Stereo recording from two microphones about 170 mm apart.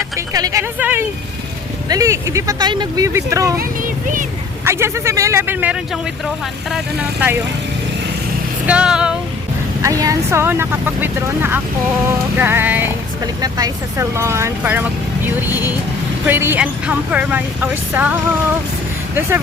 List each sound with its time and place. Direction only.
0.2 s speech: 20° right (ahead or behind)
3.6 s speech: 55° right (ahead or behind)
4.6 s speech: 15° right (ahead or behind)
8.6 s music: 5° right (ahead or behind)
9.8 s speech: 20° right (ahead or behind)
13.2 s speech: 20° right (ahead or behind)